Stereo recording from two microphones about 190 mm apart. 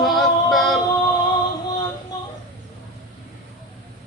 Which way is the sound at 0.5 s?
Centre (ahead or behind).